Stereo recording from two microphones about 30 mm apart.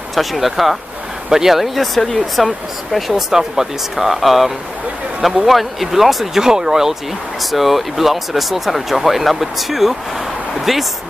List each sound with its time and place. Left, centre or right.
0.1 s speech: centre
1.3 s speech: centre
2.0 s speech: centre
2.3 s speech: centre
3.3 s speech: centre
6.4 s speech: centre
7.5 s speech: centre